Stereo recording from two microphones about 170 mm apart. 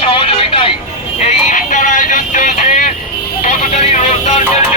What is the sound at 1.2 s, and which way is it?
Vehicle, 45° left (ahead or behind).